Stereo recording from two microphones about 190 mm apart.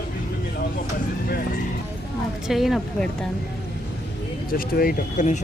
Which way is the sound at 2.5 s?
Centre (ahead or behind).